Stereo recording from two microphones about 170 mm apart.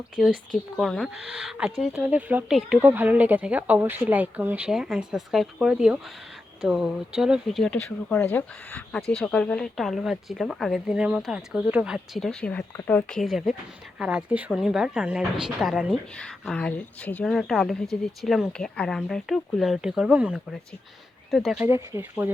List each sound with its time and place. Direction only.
0.2 s speech: centre (ahead or behind)
21.6 s speech: 15° right (ahead or behind)